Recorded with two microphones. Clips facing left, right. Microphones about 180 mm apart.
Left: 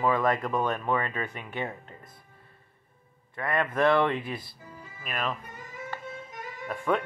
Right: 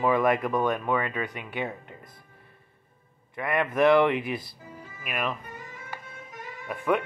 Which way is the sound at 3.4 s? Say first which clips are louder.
Right 2 dB; 15° right (ahead or behind).